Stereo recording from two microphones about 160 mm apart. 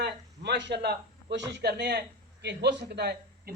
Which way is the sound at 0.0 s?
90° right.